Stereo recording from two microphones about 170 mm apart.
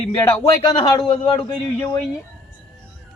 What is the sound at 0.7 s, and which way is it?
Speech, 30° left (ahead or behind).